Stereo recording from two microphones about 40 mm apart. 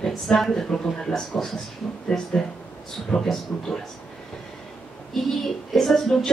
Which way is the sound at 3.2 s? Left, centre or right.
Centre.